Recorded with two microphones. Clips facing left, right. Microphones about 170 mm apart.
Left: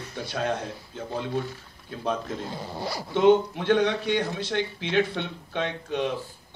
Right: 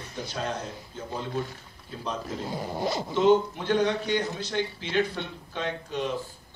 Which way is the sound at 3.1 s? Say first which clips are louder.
Left 3 dB; 60° left (ahead or behind).